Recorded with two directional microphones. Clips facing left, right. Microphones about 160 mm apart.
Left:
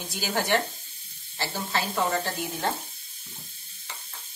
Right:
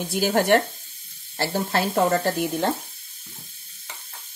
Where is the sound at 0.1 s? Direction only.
55° right (ahead or behind).